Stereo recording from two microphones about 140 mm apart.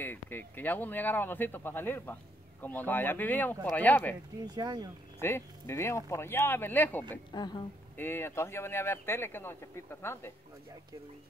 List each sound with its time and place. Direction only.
0.0 s speech: 15° left (ahead or behind)
4.6 s speech: 30° right (ahead or behind)
5.2 s speech: 20° left (ahead or behind)
7.3 s a woman's voice: 30° left (ahead or behind)
8.0 s speech: 15° left (ahead or behind)